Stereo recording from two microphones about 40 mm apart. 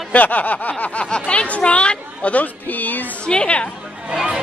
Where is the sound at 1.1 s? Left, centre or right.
Left.